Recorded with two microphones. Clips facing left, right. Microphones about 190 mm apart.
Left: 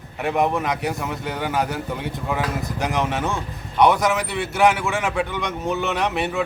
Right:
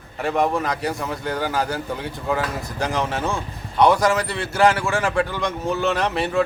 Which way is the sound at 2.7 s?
20° left (ahead or behind).